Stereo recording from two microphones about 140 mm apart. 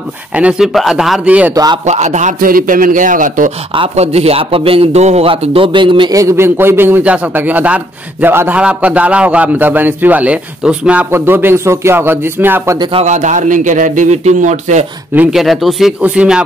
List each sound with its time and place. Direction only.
0.4 s speech: 5° right (ahead or behind)
1.5 s speech: 25° right (ahead or behind)
1.9 s a man's voice: 55° right (ahead or behind)
3.7 s a man's voice: 45° right (ahead or behind); by 12.7 s 15° right (ahead or behind)
12.9 s a man's voice: 55° right (ahead or behind)
15.1 s a man's voice: centre (ahead or behind)